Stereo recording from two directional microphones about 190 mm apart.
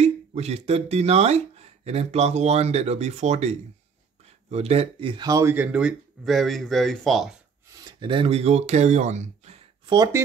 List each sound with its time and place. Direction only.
0.0 s speech: 35° right (ahead or behind); by 7.3 s centre (ahead or behind)
7.6 s speech: 20° right (ahead or behind)
9.8 s speech: 20° right (ahead or behind)